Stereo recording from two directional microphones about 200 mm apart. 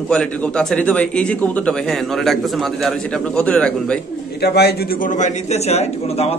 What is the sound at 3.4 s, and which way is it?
Speech, 5° left (ahead or behind).